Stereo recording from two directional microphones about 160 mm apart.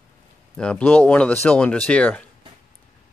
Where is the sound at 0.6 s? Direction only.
5° left (ahead or behind).